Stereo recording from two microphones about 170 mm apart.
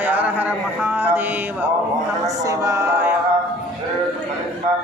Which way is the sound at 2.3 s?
20° right (ahead or behind).